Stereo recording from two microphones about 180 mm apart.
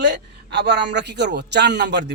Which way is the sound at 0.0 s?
75° right (ahead or behind).